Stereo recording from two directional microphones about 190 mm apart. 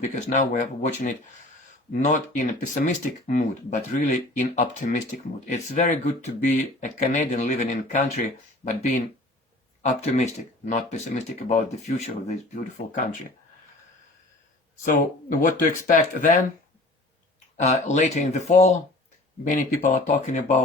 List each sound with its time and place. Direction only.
0.0 s speech: 40° left (ahead or behind)
14.8 s speech: 45° left (ahead or behind)
17.6 s speech: 40° left (ahead or behind)